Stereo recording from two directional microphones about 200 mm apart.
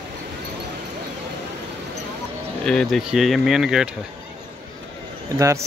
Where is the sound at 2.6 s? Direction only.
5° left (ahead or behind).